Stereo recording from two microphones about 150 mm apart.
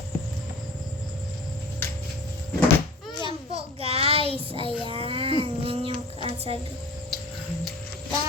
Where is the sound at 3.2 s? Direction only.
40° right (ahead or behind).